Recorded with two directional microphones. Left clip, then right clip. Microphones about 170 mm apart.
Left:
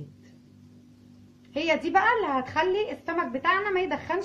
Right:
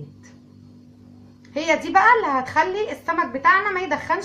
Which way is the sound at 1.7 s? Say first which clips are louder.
Right 7 dB; 45° left (ahead or behind).